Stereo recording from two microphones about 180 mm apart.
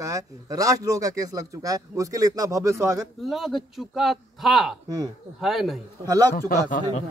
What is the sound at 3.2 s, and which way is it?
A man's voice, centre (ahead or behind).